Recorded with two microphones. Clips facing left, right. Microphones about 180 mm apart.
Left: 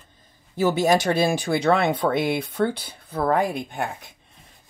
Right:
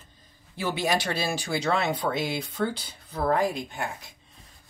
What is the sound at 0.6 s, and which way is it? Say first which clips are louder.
Speech: left 8 dB; 45° left (ahead or behind).